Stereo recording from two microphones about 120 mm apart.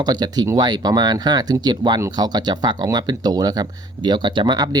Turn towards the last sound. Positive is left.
turn(degrees=-35)  # may be behind; listen again after turning